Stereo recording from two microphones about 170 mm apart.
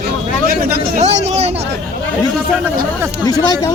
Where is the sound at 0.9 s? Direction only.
40° right (ahead or behind).